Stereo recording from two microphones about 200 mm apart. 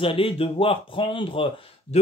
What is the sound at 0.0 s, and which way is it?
Speech, 25° left (ahead or behind).